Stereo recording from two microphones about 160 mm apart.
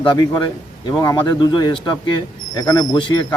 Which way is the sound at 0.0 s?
30° left (ahead or behind).